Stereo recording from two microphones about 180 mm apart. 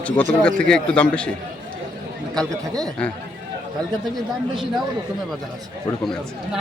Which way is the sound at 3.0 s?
5° left (ahead or behind).